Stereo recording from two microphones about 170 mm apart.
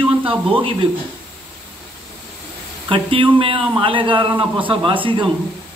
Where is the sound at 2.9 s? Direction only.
30° right (ahead or behind).